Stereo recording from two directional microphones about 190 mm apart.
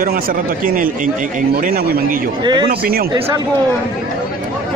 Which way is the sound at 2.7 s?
50° right (ahead or behind).